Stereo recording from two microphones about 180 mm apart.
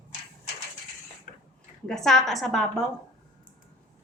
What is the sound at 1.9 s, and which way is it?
Speech, centre (ahead or behind).